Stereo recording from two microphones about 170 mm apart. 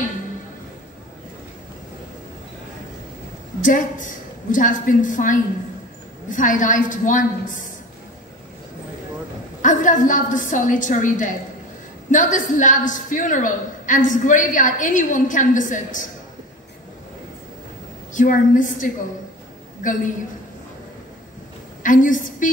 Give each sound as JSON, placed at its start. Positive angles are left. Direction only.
{"t": 3.6, "sound": "a woman's voice", "side_deg": 50}
{"t": 9.6, "sound": "a woman's voice", "side_deg": 50}
{"t": 18.1, "sound": "a woman's voice", "side_deg": 50}
{"t": 21.8, "sound": "a woman's voice", "side_deg": 50}